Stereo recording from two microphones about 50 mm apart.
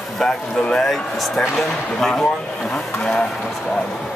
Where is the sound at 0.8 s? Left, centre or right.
Centre.